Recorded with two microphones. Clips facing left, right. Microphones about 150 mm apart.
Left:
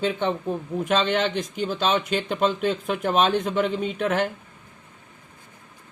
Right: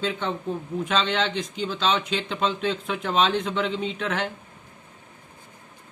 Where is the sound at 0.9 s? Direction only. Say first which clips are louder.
Left 3 dB; 50° left (ahead or behind).